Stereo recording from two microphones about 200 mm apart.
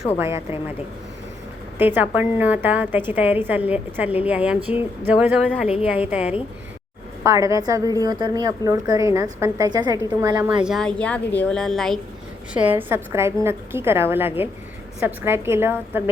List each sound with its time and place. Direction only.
0.2 s a woman's voice: 15° right (ahead or behind)
1.8 s a woman's voice: 10° right (ahead or behind)
10.6 s a woman's voice: centre (ahead or behind)
12.5 s a woman's voice: 10° right (ahead or behind)